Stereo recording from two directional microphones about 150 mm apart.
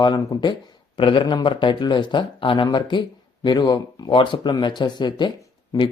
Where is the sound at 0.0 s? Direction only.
30° left (ahead or behind).